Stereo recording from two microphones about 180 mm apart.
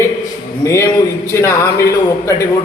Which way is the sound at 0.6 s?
15° left (ahead or behind).